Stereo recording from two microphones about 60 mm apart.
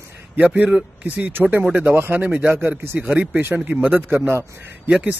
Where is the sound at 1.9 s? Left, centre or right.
Right.